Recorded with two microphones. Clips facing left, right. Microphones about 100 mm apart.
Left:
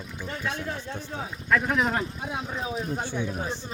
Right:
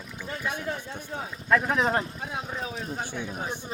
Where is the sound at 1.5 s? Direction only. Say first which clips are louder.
Right 1 dB; 20° right (ahead or behind).